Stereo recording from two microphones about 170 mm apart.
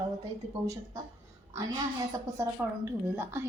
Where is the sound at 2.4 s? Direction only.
15° right (ahead or behind).